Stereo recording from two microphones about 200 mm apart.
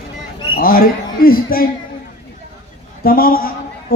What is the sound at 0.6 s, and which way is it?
Speech, 45° left (ahead or behind).